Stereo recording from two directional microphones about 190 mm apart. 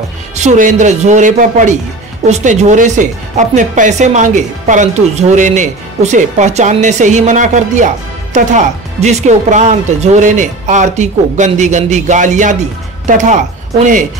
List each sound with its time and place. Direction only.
0.4 s speech: 40° right (ahead or behind)